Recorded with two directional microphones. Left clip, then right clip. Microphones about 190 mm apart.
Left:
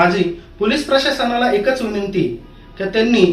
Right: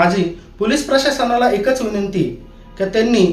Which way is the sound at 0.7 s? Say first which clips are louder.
Even; 15° right (ahead or behind).